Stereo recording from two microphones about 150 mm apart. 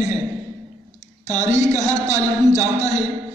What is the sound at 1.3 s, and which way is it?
A man's voice, 50° left (ahead or behind).